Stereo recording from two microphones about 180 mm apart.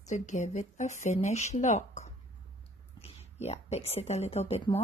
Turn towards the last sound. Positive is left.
turn(degrees=35)  # may be behind; listen again after turning